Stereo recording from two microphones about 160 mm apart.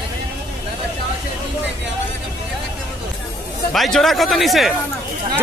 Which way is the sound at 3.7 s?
Centre (ahead or behind).